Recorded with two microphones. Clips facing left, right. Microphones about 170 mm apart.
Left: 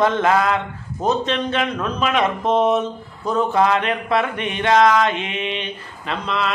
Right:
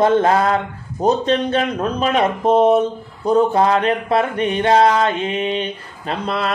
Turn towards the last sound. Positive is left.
turn(degrees=-40)  # may be behind; listen again after turning